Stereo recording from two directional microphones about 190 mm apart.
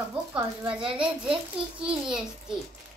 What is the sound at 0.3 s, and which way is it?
A child's voice, 5° right (ahead or behind).